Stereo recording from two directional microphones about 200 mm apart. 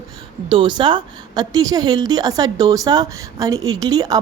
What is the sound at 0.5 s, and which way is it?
A woman's voice, 25° right (ahead or behind).